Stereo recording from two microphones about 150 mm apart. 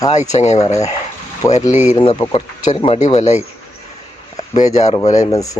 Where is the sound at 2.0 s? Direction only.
35° left (ahead or behind).